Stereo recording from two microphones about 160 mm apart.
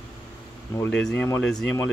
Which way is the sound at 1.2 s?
10° left (ahead or behind).